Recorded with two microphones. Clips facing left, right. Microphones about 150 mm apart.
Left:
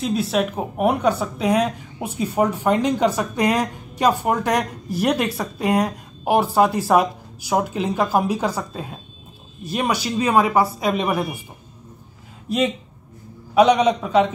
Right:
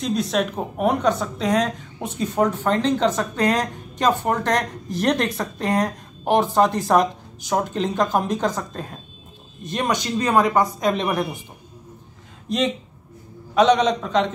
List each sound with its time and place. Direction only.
0.0 s speech: 5° left (ahead or behind)
12.4 s speech: 5° left (ahead or behind)